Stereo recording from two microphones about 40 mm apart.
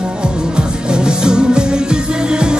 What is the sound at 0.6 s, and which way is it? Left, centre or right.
Music, right.